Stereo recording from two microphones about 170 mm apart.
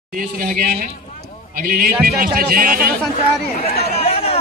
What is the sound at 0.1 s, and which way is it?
A man's voice, 55° right (ahead or behind).